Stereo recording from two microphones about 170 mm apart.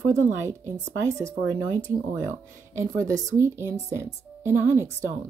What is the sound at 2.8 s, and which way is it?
A woman's voice, 20° right (ahead or behind).